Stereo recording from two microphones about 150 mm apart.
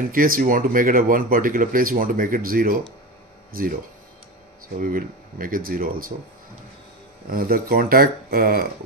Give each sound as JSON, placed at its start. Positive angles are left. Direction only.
{"t": 0.1, "sound": "speech", "side_deg": -70}
{"t": 4.7, "sound": "speech", "side_deg": -65}
{"t": 7.2, "sound": "speech", "side_deg": -75}